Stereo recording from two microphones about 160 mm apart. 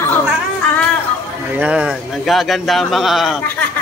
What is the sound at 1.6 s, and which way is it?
Speech, 5° right (ahead or behind).